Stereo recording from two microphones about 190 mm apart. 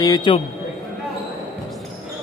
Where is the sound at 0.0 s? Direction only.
20° left (ahead or behind).